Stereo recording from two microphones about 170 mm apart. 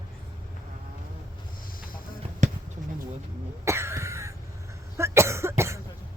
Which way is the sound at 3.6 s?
15° right (ahead or behind).